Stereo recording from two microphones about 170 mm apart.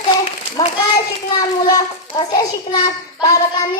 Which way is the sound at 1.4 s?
20° left (ahead or behind).